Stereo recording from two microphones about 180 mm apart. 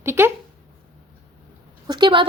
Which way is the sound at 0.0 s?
15° right (ahead or behind).